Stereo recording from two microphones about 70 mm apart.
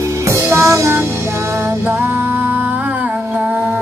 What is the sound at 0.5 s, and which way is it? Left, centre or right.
Music, right.